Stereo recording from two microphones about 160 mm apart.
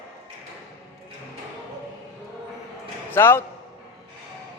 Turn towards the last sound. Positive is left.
turn(degrees=15)  # may be behind; listen again after turning